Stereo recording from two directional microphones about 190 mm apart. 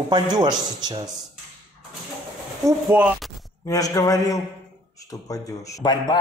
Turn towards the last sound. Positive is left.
turn(degrees=20)  # may be behind; listen again after turning